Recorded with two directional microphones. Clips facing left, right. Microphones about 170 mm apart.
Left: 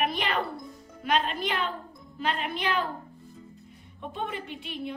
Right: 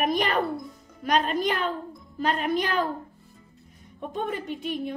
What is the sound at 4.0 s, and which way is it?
Speech, 45° right (ahead or behind).